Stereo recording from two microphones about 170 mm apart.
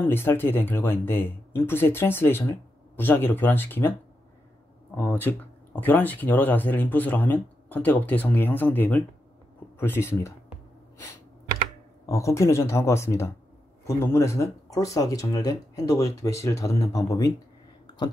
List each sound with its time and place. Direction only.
0.0 s speech: 15° left (ahead or behind)
4.9 s speech: 10° left (ahead or behind)
12.1 s speech: 15° left (ahead or behind)
17.8 s a sound: 25° left (ahead or behind)